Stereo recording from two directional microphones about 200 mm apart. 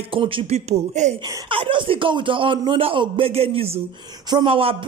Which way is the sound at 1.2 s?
25° right (ahead or behind).